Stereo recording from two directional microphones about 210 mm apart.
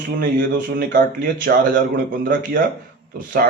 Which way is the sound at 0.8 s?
40° right (ahead or behind).